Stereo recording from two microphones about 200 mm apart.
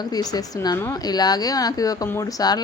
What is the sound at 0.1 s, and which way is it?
Speech, 20° left (ahead or behind).